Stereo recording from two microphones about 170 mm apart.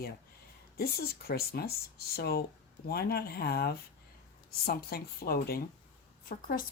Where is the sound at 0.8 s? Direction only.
65° left (ahead or behind).